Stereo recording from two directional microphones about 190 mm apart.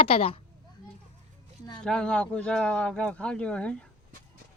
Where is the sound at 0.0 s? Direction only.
30° left (ahead or behind).